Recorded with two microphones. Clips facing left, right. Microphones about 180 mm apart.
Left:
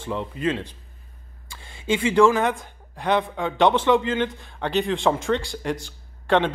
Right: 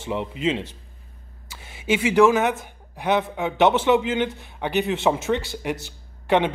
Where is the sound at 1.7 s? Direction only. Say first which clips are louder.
Right 1 dB; 10° right (ahead or behind).